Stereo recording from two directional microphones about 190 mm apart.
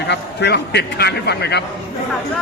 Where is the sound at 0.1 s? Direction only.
65° left (ahead or behind).